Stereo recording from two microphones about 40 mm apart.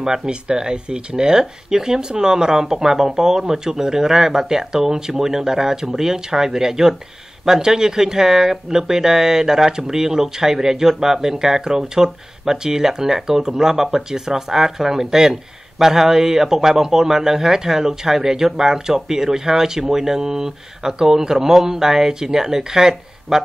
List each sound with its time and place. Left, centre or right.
0.0 s a man's voice: centre